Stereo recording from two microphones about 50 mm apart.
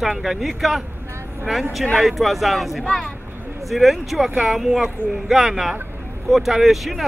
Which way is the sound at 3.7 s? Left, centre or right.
Centre.